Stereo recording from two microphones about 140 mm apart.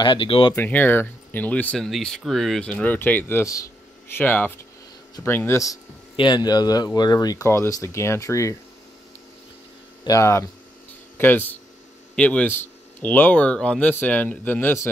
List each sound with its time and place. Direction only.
0.0 s speech: 35° left (ahead or behind)
0.6 s speech: 15° left (ahead or behind)
6.1 s speech: 30° left (ahead or behind)
10.0 s speech: 20° left (ahead or behind)